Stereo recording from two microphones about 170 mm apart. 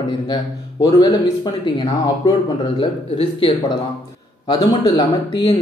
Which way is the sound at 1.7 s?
25° left (ahead or behind).